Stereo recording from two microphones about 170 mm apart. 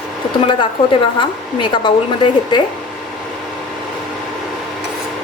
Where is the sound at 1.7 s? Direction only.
30° left (ahead or behind).